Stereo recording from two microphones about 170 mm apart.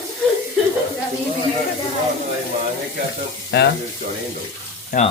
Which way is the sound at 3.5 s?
75° left (ahead or behind).